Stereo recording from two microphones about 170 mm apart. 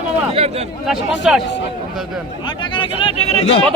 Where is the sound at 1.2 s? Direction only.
5° right (ahead or behind).